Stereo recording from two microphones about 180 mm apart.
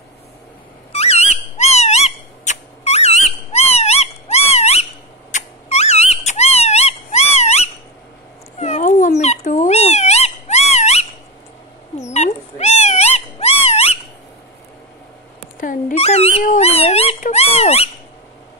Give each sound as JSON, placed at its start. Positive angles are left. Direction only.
{"t": 0.9, "sound": "owl", "side_deg": 35}
{"t": 5.3, "sound": "dog", "side_deg": 35}
{"t": 8.5, "sound": "cat", "side_deg": 40}
{"t": 9.2, "sound": "dog", "side_deg": 40}
{"t": 12.1, "sound": "cat", "side_deg": 40}
{"t": 15.6, "sound": "dog", "side_deg": 40}